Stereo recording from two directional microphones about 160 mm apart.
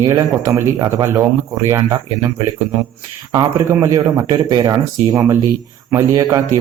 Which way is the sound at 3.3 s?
15° right (ahead or behind).